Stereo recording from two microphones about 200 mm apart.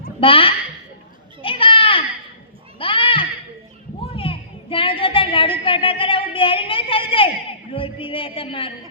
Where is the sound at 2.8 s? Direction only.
25° left (ahead or behind).